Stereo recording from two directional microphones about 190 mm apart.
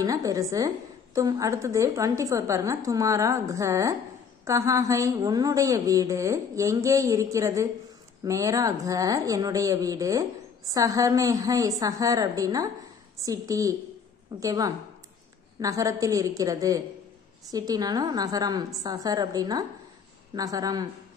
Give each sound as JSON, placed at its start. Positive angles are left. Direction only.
{"t": 0.0, "sound": "a woman's voice", "side_deg": -20}